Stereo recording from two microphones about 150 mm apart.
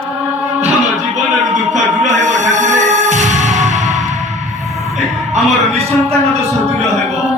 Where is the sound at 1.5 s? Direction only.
55° right (ahead or behind).